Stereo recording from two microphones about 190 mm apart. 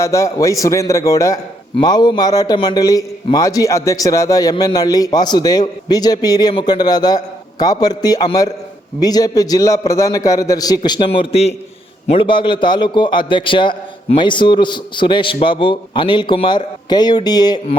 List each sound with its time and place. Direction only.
0.0 s a man's voice: 15° left (ahead or behind)